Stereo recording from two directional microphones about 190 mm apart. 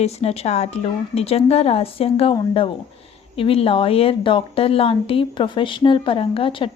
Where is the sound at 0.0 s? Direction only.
35° left (ahead or behind).